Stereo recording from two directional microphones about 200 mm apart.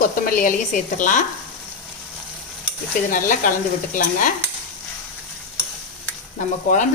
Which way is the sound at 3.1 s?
40° left (ahead or behind).